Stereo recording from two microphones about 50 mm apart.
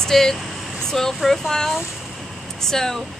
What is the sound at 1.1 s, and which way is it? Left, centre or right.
A woman's voice, centre.